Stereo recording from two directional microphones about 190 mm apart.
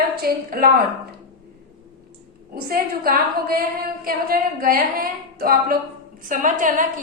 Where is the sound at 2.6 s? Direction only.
50° right (ahead or behind).